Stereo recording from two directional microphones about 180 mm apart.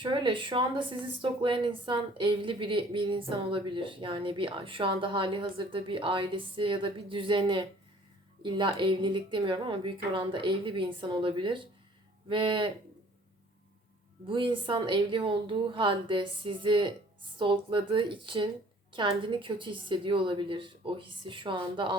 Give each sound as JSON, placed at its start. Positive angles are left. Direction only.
{"t": 0.0, "sound": "speech", "side_deg": -25}
{"t": 14.3, "sound": "speech", "side_deg": -30}